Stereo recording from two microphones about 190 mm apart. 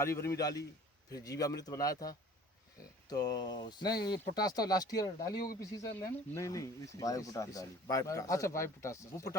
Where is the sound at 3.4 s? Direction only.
20° left (ahead or behind).